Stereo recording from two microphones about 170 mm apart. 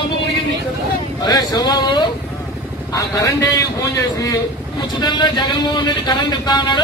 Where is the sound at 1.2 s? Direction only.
25° left (ahead or behind).